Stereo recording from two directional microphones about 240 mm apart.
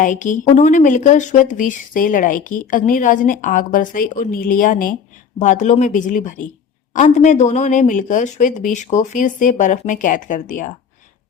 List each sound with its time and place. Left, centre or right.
0.0 s speech: left